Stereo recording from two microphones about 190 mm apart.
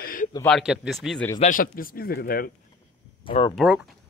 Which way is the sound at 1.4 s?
45° left (ahead or behind).